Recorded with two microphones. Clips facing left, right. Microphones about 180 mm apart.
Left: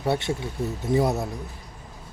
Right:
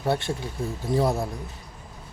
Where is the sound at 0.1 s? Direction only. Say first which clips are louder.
Left 1 dB; 25° left (ahead or behind).